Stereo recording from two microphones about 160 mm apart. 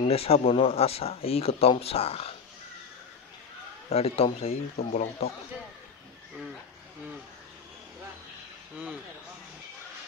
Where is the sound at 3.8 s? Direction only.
40° left (ahead or behind).